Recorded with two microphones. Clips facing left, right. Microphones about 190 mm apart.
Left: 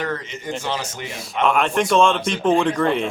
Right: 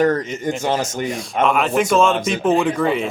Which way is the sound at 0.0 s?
45° right (ahead or behind).